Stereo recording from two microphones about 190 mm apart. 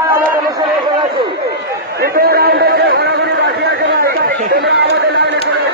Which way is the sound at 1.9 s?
55° right (ahead or behind).